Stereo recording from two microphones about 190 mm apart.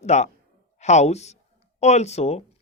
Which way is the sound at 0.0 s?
35° left (ahead or behind).